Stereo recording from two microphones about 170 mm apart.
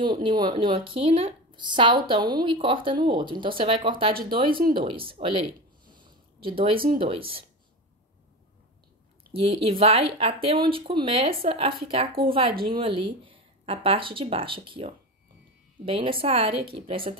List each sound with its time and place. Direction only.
0.0 s a woman's voice: 25° right (ahead or behind)
5.9 s a sound: 25° right (ahead or behind)
7.0 s speech: 30° right (ahead or behind)
9.3 s speech: 35° right (ahead or behind)